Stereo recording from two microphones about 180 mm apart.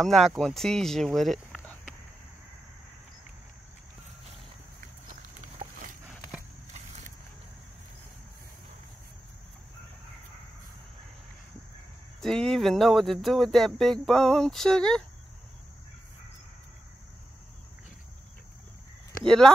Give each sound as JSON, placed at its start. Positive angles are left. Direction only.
{"t": 0.0, "sound": "speech", "side_deg": 0}
{"t": 5.6, "sound": "horse", "side_deg": -25}
{"t": 12.2, "sound": "speech", "side_deg": 5}
{"t": 19.2, "sound": "speech", "side_deg": 5}